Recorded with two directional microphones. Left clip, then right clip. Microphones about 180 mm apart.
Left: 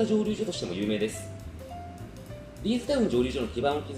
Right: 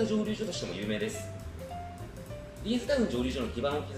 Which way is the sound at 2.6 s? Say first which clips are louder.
Left 2 dB; 15° left (ahead or behind).